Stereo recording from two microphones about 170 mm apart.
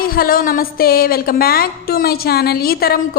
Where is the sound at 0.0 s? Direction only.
60° left (ahead or behind).